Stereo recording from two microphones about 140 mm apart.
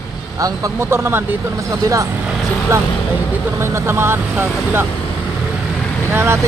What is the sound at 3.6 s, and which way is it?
Speech, 20° right (ahead or behind).